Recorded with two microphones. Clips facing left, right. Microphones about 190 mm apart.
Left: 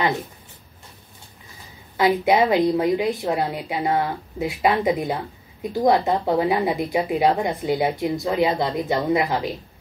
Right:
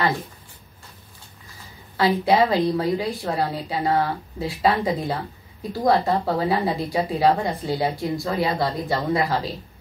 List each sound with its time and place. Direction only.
2.0 s a woman's voice: 20° left (ahead or behind)